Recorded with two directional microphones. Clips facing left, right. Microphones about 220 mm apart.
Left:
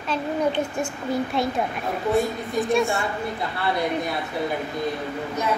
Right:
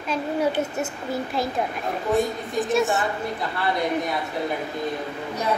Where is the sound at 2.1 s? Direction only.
Centre (ahead or behind).